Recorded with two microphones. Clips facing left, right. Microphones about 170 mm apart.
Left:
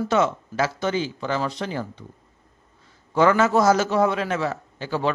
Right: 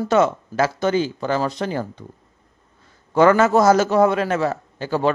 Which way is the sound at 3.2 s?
55° right (ahead or behind).